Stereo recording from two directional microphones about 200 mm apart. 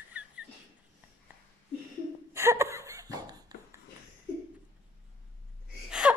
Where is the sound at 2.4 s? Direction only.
15° right (ahead or behind).